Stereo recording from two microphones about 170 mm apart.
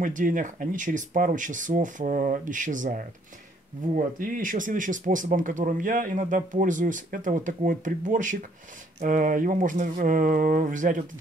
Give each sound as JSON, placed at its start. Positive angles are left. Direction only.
{"t": 0.0, "sound": "speech", "side_deg": -50}